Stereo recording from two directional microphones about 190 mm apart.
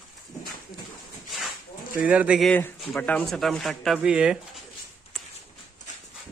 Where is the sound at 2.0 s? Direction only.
5° right (ahead or behind).